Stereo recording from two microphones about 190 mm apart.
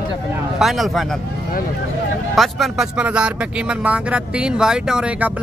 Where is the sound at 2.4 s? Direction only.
Centre (ahead or behind).